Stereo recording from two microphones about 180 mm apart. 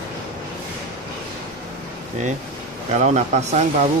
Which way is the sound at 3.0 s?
40° right (ahead or behind).